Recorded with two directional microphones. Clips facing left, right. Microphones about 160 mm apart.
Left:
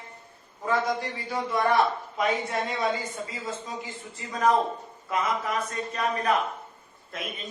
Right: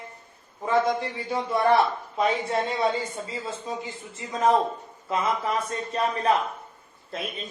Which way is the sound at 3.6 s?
25° right (ahead or behind).